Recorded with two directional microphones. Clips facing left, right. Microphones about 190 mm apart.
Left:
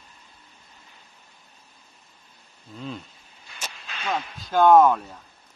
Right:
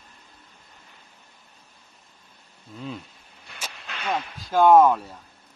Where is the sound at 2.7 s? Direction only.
5° right (ahead or behind).